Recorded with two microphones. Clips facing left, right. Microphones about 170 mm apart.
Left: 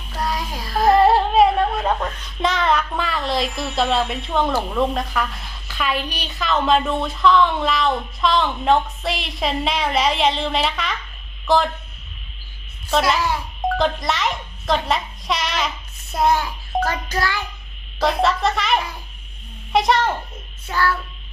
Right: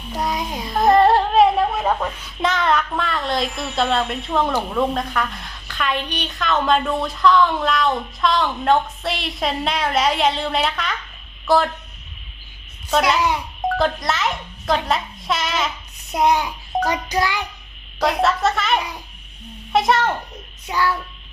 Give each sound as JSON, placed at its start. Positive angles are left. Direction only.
{"t": 0.1, "sound": "child singing", "side_deg": -20}
{"t": 0.7, "sound": "music", "side_deg": 0}
{"t": 2.0, "sound": "a woman's voice", "side_deg": -10}
{"t": 13.1, "sound": "speech", "side_deg": -20}
{"t": 13.7, "sound": "a child's voice", "side_deg": 0}
{"t": 16.0, "sound": "child singing", "side_deg": -15}
{"t": 18.0, "sound": "a woman's voice", "side_deg": 0}
{"t": 20.7, "sound": "child singing", "side_deg": -15}